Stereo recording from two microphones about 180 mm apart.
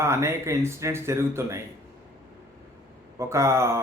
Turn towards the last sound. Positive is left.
turn(degrees=-15)  # may be behind; listen again after turning